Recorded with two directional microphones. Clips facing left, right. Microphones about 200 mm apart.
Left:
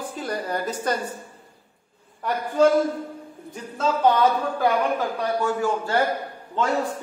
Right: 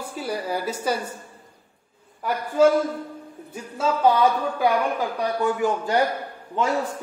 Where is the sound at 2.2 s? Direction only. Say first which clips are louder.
Right 1 dB; 5° right (ahead or behind).